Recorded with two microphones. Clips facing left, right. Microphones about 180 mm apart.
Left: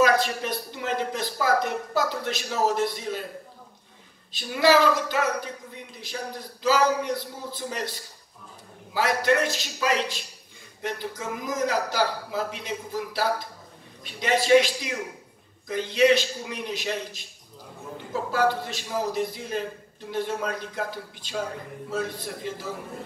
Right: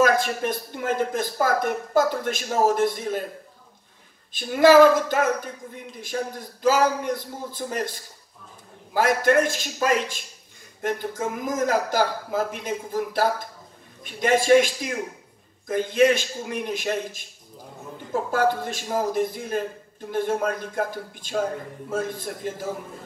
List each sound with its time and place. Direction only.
0.0 s a woman's voice: 50° right (ahead or behind)
4.3 s a woman's voice: 50° right (ahead or behind)